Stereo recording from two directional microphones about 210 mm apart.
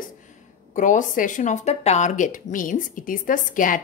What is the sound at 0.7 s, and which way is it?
Speech, 35° left (ahead or behind).